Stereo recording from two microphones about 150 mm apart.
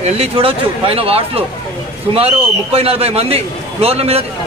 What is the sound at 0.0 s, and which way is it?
A man's voice, 40° right (ahead or behind).